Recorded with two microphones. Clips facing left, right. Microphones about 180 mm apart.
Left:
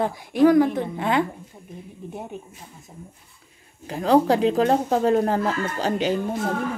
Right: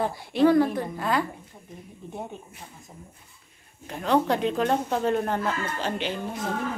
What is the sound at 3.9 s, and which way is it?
Speech, 35° left (ahead or behind).